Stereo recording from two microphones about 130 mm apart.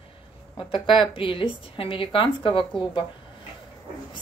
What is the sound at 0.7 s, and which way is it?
Speech, 40° left (ahead or behind).